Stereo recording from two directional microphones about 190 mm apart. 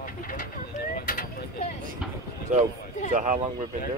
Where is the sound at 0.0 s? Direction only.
45° left (ahead or behind).